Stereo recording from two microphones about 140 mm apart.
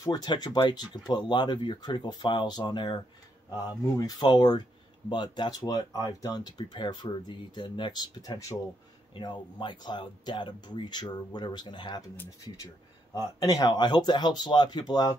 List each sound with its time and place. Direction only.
0.0 s speech: 30° left (ahead or behind)
13.1 s speech: 25° left (ahead or behind)